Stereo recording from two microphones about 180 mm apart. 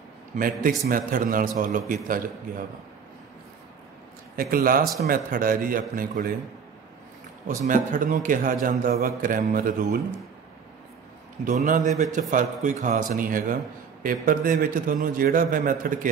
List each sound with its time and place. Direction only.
0.4 s a man's voice: 50° right (ahead or behind)
4.4 s a man's voice: 50° right (ahead or behind)
7.4 s a man's voice: 45° right (ahead or behind)
11.4 s a man's voice: 45° right (ahead or behind)